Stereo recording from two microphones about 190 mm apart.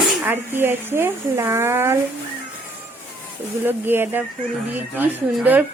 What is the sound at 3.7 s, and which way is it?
Speech, 10° right (ahead or behind).